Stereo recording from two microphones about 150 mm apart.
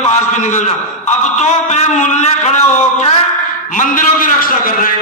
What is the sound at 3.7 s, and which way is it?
A man's voice, 60° left (ahead or behind).